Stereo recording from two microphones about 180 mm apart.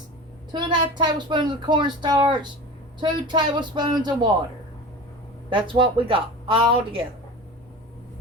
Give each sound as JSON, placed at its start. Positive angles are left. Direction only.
{"t": 0.5, "sound": "speech", "side_deg": -25}
{"t": 5.5, "sound": "speech", "side_deg": -25}